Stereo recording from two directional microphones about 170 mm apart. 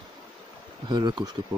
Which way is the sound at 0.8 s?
25° right (ahead or behind).